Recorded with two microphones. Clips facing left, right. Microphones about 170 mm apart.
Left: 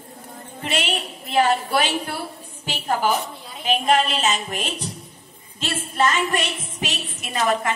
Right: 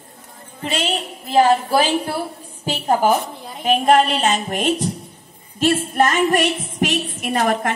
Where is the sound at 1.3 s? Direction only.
30° right (ahead or behind).